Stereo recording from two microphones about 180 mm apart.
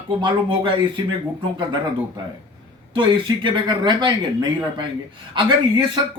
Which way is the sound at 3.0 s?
25° right (ahead or behind).